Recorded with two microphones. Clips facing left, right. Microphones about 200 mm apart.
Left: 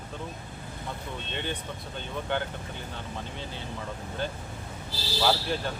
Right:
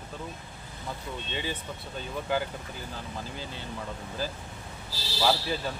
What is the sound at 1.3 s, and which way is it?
Speech, 5° right (ahead or behind).